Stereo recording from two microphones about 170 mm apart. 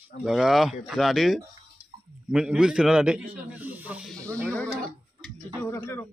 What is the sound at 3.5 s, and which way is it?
Snake, 10° right (ahead or behind).